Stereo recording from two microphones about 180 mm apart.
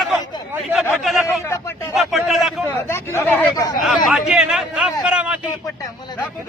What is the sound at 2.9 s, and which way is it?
Speech, 15° left (ahead or behind).